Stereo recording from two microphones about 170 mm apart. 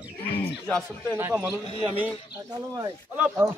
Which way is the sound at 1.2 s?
10° right (ahead or behind).